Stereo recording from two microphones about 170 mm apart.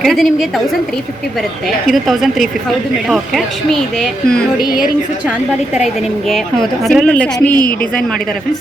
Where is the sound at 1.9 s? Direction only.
Centre (ahead or behind).